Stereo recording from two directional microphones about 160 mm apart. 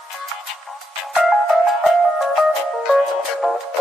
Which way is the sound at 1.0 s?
Centre (ahead or behind).